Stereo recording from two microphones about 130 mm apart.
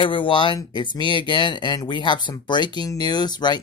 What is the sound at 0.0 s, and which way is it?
Speech, 40° left (ahead or behind).